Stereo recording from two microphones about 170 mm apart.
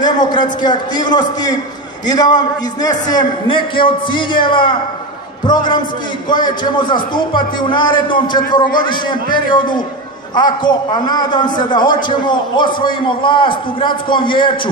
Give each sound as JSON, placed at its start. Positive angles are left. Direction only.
{"t": 0.0, "sound": "a man's voice", "side_deg": 25}